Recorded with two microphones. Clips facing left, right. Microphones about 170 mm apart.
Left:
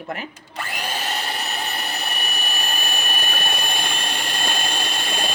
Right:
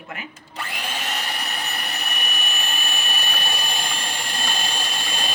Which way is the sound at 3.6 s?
60° left (ahead or behind).